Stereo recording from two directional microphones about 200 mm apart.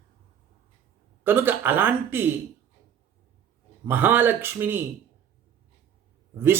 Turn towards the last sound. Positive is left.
turn(degrees=-10)  # may be behind; listen again after turning